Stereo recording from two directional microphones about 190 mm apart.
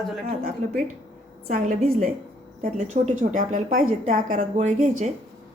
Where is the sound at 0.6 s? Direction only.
40° right (ahead or behind).